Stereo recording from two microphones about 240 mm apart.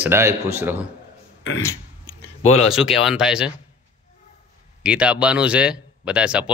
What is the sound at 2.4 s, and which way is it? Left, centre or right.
Speech, left.